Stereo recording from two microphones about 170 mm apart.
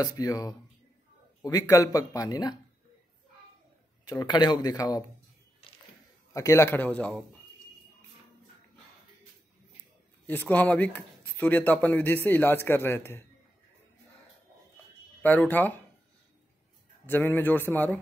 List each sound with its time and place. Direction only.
0.0 s speech: 20° left (ahead or behind)
4.0 s speech: 25° left (ahead or behind)
6.3 s speech: 15° left (ahead or behind)
10.2 s speech: 10° left (ahead or behind)
15.2 s speech: 10° left (ahead or behind)
17.0 s speech: 10° left (ahead or behind)